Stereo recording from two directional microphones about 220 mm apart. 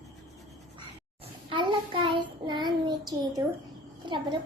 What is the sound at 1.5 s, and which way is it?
Child singing, 20° right (ahead or behind).